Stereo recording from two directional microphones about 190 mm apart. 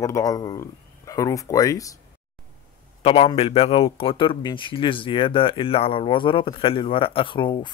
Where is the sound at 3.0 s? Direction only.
30° left (ahead or behind).